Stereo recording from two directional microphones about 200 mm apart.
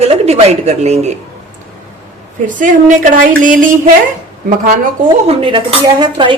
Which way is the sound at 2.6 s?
40° right (ahead or behind).